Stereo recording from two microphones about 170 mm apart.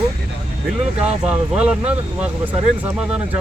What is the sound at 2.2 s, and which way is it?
Speech, 10° right (ahead or behind).